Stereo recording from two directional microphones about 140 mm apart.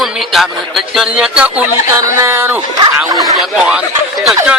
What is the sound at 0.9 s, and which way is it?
Speech, 5° right (ahead or behind).